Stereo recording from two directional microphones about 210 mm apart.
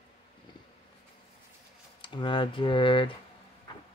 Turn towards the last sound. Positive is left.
turn(degrees=25)  # may be behind; listen again after turning